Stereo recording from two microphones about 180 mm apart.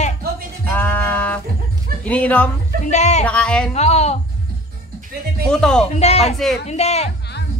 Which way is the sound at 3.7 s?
35° left (ahead or behind).